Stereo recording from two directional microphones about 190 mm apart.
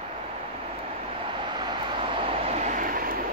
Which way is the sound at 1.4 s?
25° right (ahead or behind).